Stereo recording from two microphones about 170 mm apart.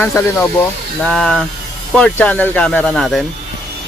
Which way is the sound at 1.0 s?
5° left (ahead or behind).